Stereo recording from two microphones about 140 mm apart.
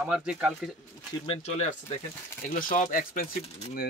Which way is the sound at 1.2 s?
45° left (ahead or behind).